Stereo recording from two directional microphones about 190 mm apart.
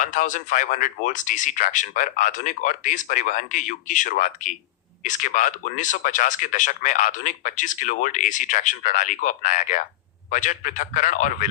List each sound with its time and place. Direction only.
0.0 s speech: 40° left (ahead or behind)